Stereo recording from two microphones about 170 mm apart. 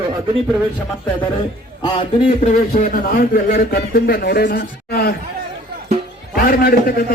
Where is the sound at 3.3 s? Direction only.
60° left (ahead or behind).